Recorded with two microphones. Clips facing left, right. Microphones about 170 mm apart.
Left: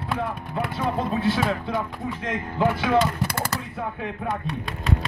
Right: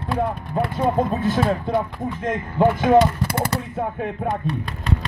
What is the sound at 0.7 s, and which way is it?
Speech, 45° right (ahead or behind).